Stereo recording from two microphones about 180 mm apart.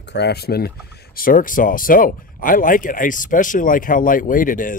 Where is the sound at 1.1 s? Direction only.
50° left (ahead or behind).